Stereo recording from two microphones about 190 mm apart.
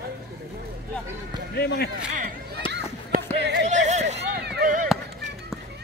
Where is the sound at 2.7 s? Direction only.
60° right (ahead or behind).